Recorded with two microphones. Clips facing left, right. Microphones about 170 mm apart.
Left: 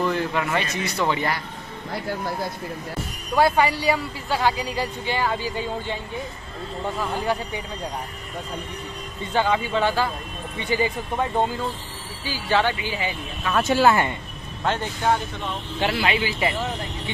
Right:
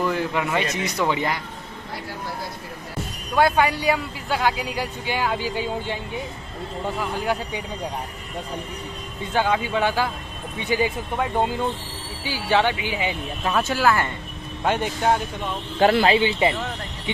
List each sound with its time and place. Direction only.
0.0 s a man's voice: 10° right (ahead or behind)
3.3 s speech: centre (ahead or behind)
7.0 s speech: 10° right (ahead or behind)
9.3 s speech: 10° right (ahead or behind)
13.7 s speech: 20° left (ahead or behind)
14.6 s speech: 15° right (ahead or behind)
15.8 s speech: 40° right (ahead or behind)
16.2 s speech: 25° right (ahead or behind)